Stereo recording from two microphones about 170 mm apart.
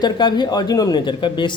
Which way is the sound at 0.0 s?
25° left (ahead or behind).